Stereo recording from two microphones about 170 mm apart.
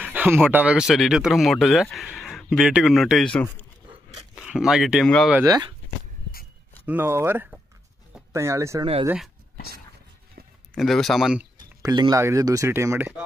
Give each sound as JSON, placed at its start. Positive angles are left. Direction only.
{"t": 0.0, "sound": "a sound", "side_deg": -10}
{"t": 0.5, "sound": "speech", "side_deg": -10}
{"t": 5.3, "sound": "speech", "side_deg": -20}
{"t": 6.9, "sound": "speech", "side_deg": -15}
{"t": 10.7, "sound": "speech", "side_deg": 0}
{"t": 11.8, "sound": "speech", "side_deg": -20}